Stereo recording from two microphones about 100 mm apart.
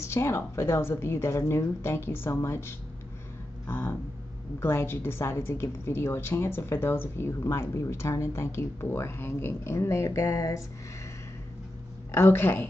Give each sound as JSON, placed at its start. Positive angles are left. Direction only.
{"t": 0.0, "sound": "a woman's voice", "side_deg": 25}
{"t": 12.1, "sound": "a woman's voice", "side_deg": 25}